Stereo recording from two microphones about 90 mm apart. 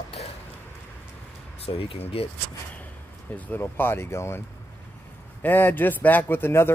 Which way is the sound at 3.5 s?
25° left (ahead or behind).